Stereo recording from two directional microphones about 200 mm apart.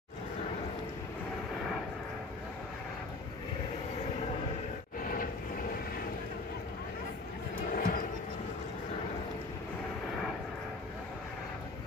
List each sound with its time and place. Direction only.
5.0 s vehicle: 45° left (ahead or behind)
7.7 s vehicle: 45° left (ahead or behind)